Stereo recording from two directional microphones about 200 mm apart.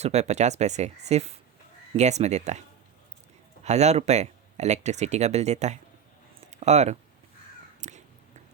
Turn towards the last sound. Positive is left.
turn(degrees=-35)  # may be behind; listen again after turning